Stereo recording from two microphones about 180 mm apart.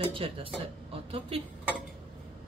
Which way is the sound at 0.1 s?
30° right (ahead or behind).